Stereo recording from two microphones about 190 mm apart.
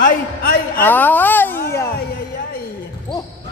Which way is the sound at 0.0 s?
50° left (ahead or behind).